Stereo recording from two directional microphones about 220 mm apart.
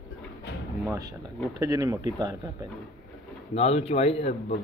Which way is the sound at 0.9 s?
15° right (ahead or behind).